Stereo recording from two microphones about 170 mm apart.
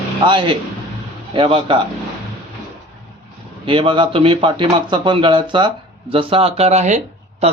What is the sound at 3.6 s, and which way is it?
A man's voice, 30° right (ahead or behind).